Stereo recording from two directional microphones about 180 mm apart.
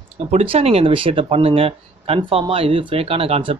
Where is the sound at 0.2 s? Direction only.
35° right (ahead or behind).